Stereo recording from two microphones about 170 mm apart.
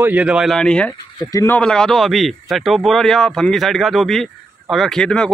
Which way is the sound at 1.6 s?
5° left (ahead or behind).